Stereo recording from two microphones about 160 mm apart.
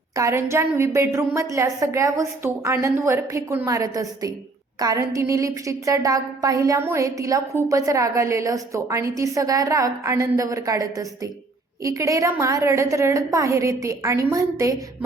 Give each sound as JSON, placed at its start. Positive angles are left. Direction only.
{"t": 0.2, "sound": "a woman's voice", "side_deg": -15}